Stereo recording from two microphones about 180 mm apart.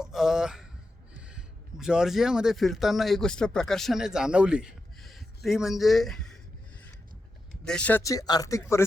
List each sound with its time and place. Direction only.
0.0 s speech: centre (ahead or behind)
7.6 s speech: 5° left (ahead or behind)